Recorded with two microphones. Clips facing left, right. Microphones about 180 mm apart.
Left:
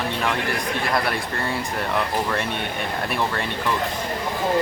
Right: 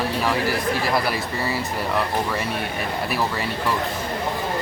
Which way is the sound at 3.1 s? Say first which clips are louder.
Even; 5° right (ahead or behind).